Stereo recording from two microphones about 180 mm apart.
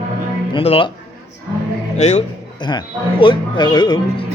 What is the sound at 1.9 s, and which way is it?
Speech, 40° left (ahead or behind).